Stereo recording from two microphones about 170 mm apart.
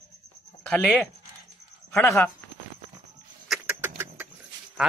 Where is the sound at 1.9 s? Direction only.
15° left (ahead or behind).